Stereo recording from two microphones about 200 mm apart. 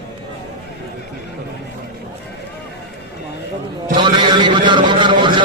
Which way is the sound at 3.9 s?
25° right (ahead or behind).